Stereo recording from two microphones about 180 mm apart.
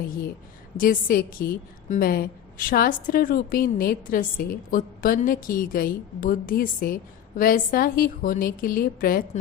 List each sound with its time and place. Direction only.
0.8 s a woman's voice: 50° left (ahead or behind)